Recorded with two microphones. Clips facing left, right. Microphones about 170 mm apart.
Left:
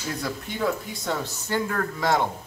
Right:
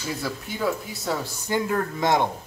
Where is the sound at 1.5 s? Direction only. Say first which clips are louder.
Right 2 dB; 15° right (ahead or behind).